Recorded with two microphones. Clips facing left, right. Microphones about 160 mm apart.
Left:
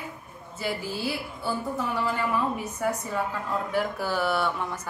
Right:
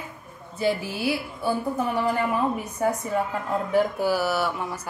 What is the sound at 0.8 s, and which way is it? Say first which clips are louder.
Speech: right 4 dB; 65° right (ahead or behind).